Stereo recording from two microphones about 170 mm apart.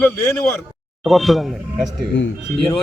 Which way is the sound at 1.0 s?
Centre (ahead or behind).